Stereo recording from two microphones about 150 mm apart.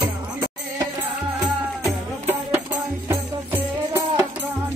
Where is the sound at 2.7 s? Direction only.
20° right (ahead or behind).